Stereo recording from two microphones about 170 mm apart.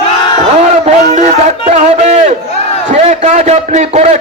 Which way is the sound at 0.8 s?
40° right (ahead or behind).